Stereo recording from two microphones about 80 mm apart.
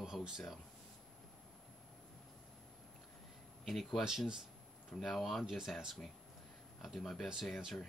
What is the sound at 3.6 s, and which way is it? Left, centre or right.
Speech, centre.